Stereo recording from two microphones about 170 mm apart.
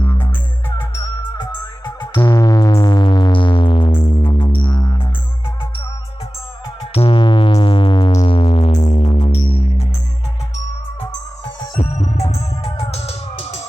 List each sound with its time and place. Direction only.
1.4 s music: 25° left (ahead or behind)
6.9 s music: 30° left (ahead or behind)
11.8 s music: 40° left (ahead or behind)